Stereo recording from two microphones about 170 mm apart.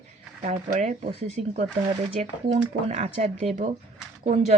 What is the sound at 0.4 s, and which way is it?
A woman's voice, 45° right (ahead or behind).